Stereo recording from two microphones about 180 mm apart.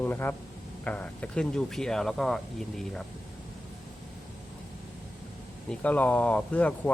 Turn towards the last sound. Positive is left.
turn(degrees=5)  # may be behind; listen again after turning